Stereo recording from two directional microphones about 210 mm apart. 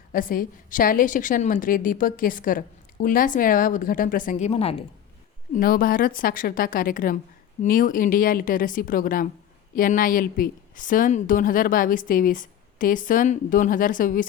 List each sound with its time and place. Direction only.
0.1 s a woman's voice: 40° left (ahead or behind)
5.5 s a woman's voice: 40° left (ahead or behind)